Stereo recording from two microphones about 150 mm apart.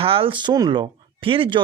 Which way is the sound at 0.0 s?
40° right (ahead or behind).